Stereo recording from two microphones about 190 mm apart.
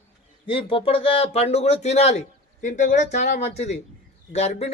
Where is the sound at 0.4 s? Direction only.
30° left (ahead or behind).